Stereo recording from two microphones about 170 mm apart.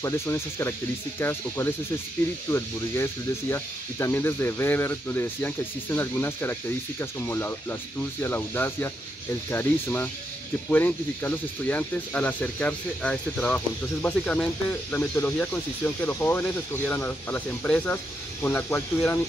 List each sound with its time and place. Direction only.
0.0 s speech: 15° left (ahead or behind)
2.5 s speech: 15° left (ahead or behind)